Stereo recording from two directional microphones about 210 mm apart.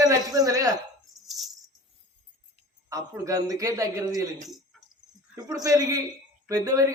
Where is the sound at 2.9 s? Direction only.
15° right (ahead or behind).